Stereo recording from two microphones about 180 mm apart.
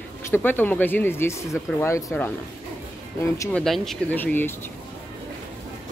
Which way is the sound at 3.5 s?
Centre (ahead or behind).